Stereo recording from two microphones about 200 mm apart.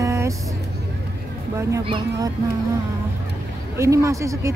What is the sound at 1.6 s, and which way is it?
Speech, 15° right (ahead or behind).